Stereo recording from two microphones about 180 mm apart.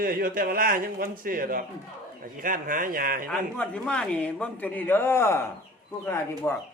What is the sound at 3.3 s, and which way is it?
Speech, 5° left (ahead or behind).